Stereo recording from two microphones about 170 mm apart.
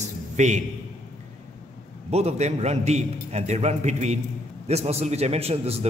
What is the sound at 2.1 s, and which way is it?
A man's voice, 40° right (ahead or behind).